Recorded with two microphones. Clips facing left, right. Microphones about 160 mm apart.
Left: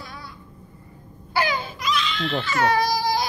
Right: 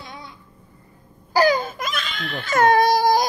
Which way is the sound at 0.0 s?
20° right (ahead or behind).